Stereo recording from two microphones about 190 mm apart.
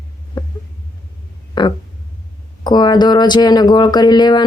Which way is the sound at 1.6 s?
20° left (ahead or behind).